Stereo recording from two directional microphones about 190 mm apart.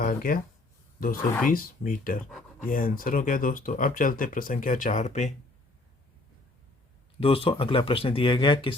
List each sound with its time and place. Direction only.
0.0 s speech: 50° left (ahead or behind)
1.5 s speech: 45° left (ahead or behind)
7.2 s speech: 30° left (ahead or behind)